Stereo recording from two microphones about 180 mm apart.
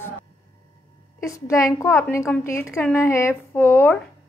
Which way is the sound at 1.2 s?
15° left (ahead or behind).